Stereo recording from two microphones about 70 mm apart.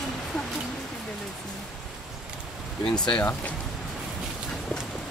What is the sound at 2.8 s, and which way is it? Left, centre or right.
Speech, centre.